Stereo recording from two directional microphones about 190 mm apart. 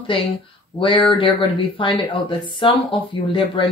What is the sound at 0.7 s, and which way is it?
Speech, 25° left (ahead or behind).